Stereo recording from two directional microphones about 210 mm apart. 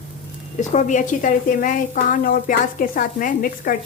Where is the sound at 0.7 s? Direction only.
35° left (ahead or behind).